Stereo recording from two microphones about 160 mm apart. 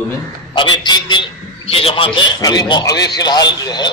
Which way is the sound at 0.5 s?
30° left (ahead or behind).